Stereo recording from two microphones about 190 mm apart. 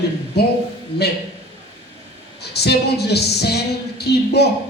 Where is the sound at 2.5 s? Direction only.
60° left (ahead or behind).